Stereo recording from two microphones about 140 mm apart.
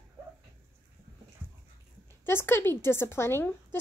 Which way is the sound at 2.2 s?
15° left (ahead or behind).